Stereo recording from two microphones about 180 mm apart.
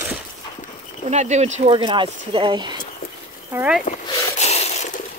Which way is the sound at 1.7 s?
25° right (ahead or behind).